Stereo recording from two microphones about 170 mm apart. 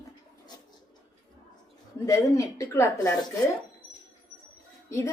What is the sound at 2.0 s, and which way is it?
A woman's voice, 20° left (ahead or behind).